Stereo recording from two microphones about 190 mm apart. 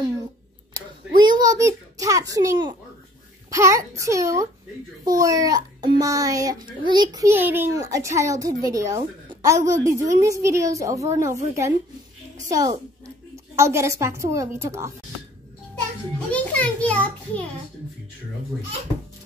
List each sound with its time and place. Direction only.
0.7 s a sound: 25° right (ahead or behind)
3.4 s a woman's voice: 15° right (ahead or behind)
16.3 s a child's voice: 5° left (ahead or behind)